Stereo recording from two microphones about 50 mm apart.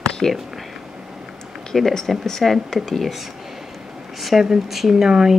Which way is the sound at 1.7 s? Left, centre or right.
Centre.